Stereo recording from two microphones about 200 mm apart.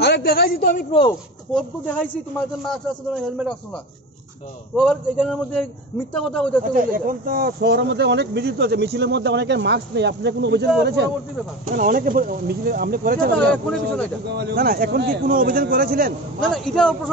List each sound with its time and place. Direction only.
0.0 s a woman's voice: 55° left (ahead or behind)
1.5 s speech: 5° left (ahead or behind)
4.7 s speech: centre (ahead or behind)
6.7 s speech: 45° right (ahead or behind)
11.6 s a man's voice: 45° right (ahead or behind)
13.7 s speech: 5° left (ahead or behind)
14.3 s a man's voice: 55° right (ahead or behind)
16.3 s speech: 5° left (ahead or behind)